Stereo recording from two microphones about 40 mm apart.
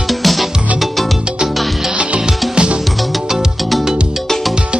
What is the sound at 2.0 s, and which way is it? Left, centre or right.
Music, right.